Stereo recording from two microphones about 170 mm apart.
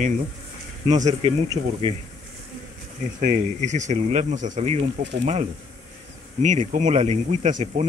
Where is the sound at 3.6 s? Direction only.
45° right (ahead or behind).